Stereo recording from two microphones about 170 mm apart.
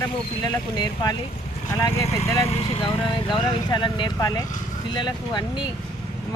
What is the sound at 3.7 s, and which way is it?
Speech, 25° left (ahead or behind).